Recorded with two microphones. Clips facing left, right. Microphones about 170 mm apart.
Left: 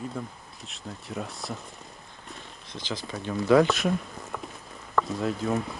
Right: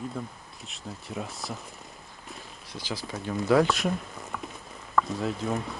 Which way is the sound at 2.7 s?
20° left (ahead or behind).